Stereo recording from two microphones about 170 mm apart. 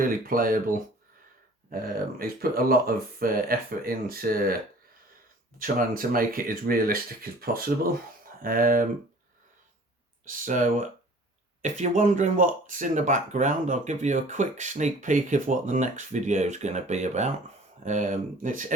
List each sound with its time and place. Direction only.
0.0 s speech: 55° right (ahead or behind)
1.7 s speech: 60° right (ahead or behind)
5.5 s speech: 55° right (ahead or behind)
10.2 s speech: 50° right (ahead or behind)